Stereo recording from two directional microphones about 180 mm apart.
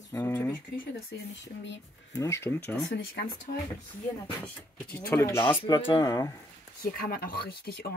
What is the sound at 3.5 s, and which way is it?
Speech, 55° left (ahead or behind).